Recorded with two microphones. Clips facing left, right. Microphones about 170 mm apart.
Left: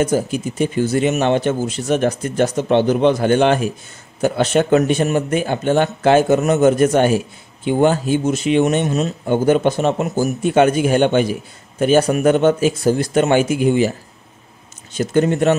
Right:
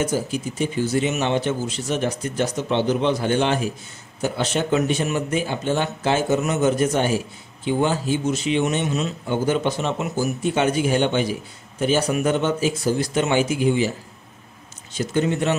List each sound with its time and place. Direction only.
0.0 s a man's voice: 55° left (ahead or behind)
15.0 s a man's voice: 50° left (ahead or behind)